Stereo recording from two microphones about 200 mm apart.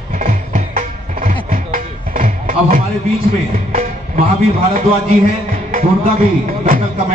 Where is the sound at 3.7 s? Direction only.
30° right (ahead or behind).